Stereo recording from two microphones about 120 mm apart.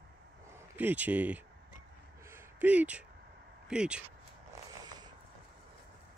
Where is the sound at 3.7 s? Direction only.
5° right (ahead or behind).